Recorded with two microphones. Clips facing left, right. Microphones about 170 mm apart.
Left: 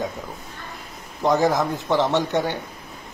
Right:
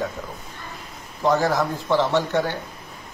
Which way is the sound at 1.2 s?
20° left (ahead or behind).